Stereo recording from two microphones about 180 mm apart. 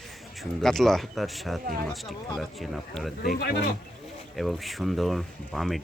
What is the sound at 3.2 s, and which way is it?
Speech, 55° left (ahead or behind).